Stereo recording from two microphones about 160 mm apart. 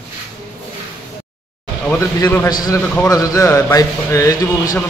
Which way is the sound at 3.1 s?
20° left (ahead or behind).